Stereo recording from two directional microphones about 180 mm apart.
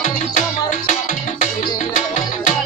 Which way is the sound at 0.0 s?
40° left (ahead or behind).